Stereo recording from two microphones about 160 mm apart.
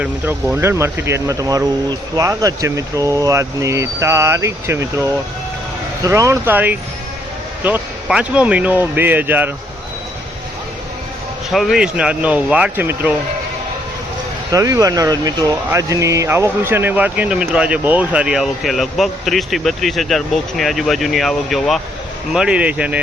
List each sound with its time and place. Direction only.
0.0 s speech: 10° right (ahead or behind)
11.5 s speech: centre (ahead or behind)
14.5 s speech: 20° right (ahead or behind)